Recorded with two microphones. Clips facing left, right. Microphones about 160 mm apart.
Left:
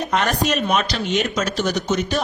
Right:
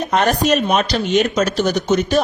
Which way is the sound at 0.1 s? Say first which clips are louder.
Right 6 dB; 40° right (ahead or behind).